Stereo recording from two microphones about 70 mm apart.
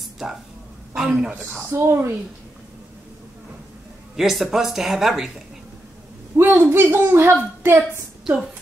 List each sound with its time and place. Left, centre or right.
0.9 s a woman's voice: centre
1.3 s a woman's voice: right
4.2 s speech: centre
6.3 s a woman's voice: right